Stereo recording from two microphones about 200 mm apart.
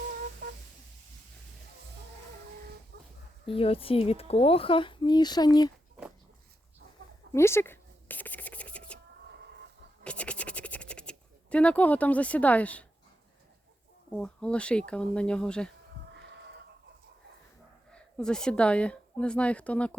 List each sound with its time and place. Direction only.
3.4 s speech: 30° left (ahead or behind)
7.3 s a sound: 10° left (ahead or behind)
10.0 s scratch: 5° left (ahead or behind)
14.1 s speech: 5° left (ahead or behind)
17.9 s speech: 5° left (ahead or behind)